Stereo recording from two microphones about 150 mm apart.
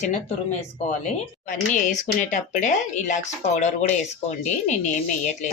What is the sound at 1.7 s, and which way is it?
Speech, 55° left (ahead or behind).